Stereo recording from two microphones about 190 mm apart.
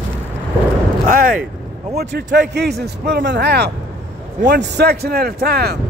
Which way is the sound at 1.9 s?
60° right (ahead or behind).